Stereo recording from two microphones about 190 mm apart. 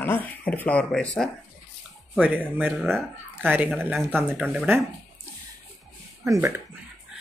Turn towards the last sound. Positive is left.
turn(degrees=-15)  # may be behind; listen again after turning